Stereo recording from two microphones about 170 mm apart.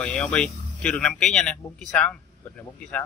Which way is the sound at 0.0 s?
5° left (ahead or behind).